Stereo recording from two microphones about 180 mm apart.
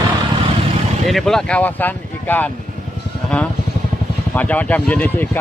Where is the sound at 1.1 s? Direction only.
Centre (ahead or behind).